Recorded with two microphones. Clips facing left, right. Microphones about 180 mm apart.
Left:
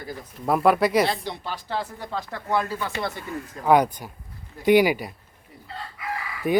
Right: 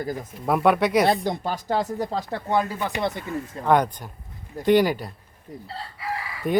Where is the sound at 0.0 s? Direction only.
45° right (ahead or behind).